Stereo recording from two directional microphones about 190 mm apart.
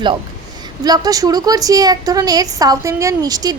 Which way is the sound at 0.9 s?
20° right (ahead or behind).